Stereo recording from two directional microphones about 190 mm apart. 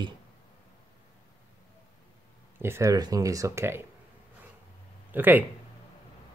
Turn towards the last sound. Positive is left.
turn(degrees=-10)  # may be behind; listen again after turning